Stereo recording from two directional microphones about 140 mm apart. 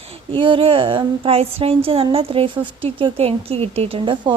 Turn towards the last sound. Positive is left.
turn(degrees=-40)  # may be behind; listen again after turning